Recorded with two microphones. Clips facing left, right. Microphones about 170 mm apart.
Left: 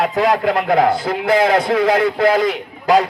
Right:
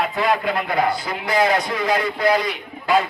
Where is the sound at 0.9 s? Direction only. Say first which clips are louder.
Left 7 dB; 50° left (ahead or behind).